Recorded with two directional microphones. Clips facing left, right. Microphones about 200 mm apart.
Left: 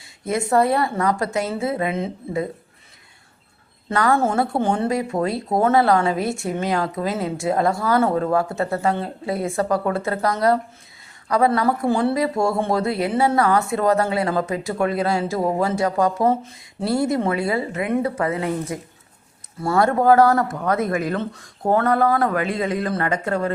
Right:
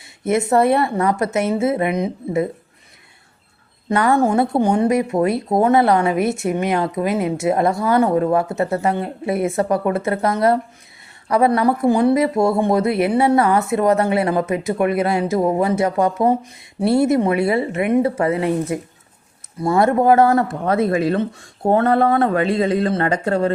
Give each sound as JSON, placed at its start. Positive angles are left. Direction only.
{"t": 0.3, "sound": "a woman's voice", "side_deg": -25}
{"t": 3.8, "sound": "a woman's voice", "side_deg": -20}